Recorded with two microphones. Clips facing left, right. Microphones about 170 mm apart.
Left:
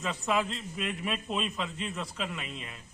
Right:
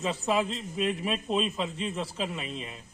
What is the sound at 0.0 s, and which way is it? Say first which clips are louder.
A man's voice: right 3 dB; 30° right (ahead or behind).